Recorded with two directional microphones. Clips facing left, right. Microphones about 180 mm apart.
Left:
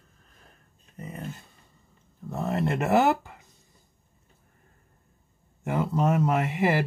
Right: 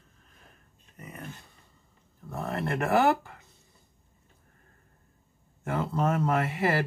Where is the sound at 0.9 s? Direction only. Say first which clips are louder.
Left 5 dB; 30° left (ahead or behind).